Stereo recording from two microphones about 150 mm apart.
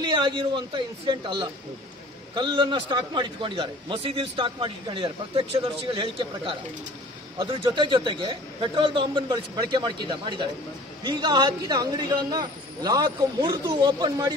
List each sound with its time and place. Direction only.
0.0 s a man's voice: 30° right (ahead or behind)